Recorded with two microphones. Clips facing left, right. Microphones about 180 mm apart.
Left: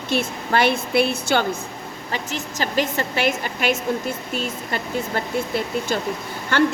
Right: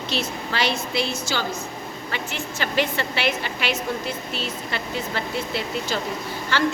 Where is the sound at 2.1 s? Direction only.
40° left (ahead or behind).